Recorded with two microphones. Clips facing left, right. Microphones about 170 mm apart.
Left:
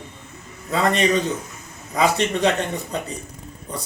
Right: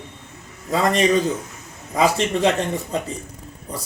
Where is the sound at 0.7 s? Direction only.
35° right (ahead or behind).